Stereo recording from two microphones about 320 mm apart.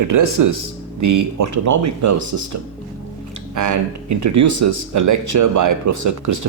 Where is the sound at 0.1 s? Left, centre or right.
Right.